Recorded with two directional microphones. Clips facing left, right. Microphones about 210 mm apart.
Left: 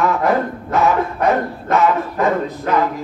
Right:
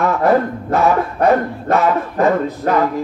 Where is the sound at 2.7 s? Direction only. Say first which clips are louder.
Right 2 dB; 40° right (ahead or behind).